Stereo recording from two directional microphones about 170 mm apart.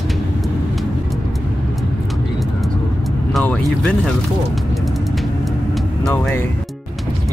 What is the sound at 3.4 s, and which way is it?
Speech, 5° left (ahead or behind).